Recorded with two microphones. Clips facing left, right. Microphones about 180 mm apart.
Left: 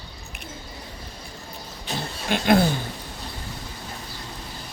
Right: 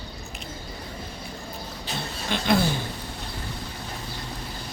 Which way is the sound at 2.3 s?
50° left (ahead or behind).